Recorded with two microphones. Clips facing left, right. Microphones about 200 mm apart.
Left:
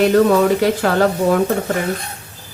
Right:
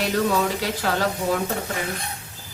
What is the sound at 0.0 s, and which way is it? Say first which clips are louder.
Speech: left 10 dB; 60° left (ahead or behind).